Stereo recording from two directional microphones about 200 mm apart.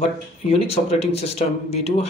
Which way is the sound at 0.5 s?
30° left (ahead or behind).